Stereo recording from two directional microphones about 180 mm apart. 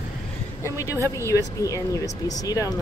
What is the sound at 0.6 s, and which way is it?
A woman's voice, 15° left (ahead or behind).